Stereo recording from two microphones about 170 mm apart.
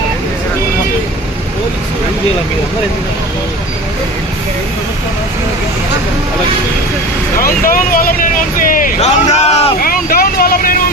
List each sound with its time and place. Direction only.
7.3 s speech: 55° left (ahead or behind); by 9.7 s 40° left (ahead or behind)
9.8 s vehicle: 60° left (ahead or behind)